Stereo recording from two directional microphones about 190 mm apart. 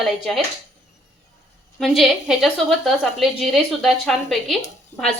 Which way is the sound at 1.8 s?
Centre (ahead or behind).